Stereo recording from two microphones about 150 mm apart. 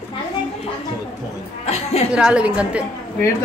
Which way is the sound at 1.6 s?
45° left (ahead or behind).